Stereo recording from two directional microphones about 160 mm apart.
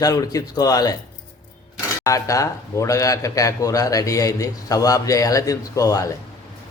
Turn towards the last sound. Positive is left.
turn(degrees=20)  # may be behind; listen again after turning